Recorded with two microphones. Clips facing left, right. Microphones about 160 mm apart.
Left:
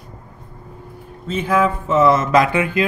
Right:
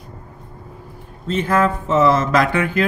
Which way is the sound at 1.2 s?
10° left (ahead or behind).